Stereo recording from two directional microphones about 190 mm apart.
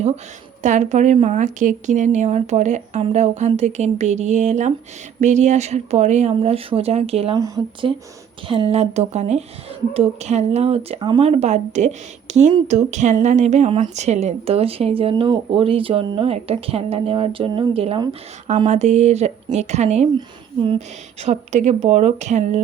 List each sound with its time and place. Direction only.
0.6 s speech: 40° right (ahead or behind)
7.3 s speech: 20° right (ahead or behind); by 22.6 s 35° right (ahead or behind)